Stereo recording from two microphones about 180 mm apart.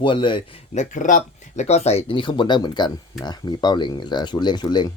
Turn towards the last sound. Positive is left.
turn(degrees=25)  # may be behind; listen again after turning